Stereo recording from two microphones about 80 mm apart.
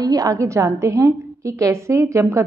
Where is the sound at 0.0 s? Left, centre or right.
Right.